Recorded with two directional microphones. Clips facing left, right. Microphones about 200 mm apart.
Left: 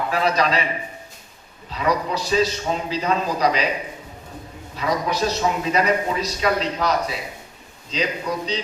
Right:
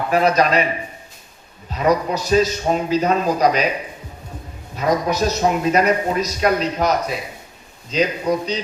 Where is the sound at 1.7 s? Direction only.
45° right (ahead or behind).